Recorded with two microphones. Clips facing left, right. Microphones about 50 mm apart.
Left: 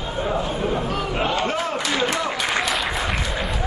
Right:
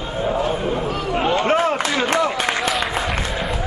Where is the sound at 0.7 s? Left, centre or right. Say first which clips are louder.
Right 2 dB; centre.